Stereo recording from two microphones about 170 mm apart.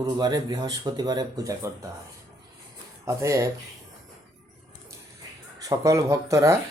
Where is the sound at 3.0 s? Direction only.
20° right (ahead or behind).